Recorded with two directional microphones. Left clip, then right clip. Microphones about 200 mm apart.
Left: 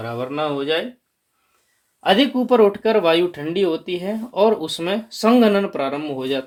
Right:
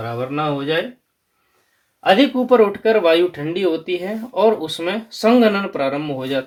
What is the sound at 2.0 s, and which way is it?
Speech, 45° left (ahead or behind).